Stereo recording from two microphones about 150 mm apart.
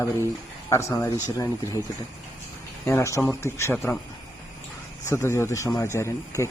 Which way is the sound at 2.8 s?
20° left (ahead or behind).